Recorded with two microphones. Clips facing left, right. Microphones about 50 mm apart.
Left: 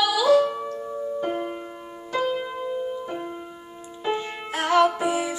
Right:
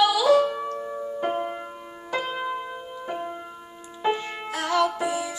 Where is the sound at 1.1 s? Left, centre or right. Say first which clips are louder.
Right 2 dB; right.